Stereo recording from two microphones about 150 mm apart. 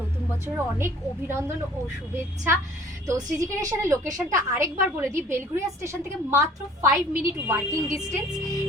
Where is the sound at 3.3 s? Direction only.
20° right (ahead or behind).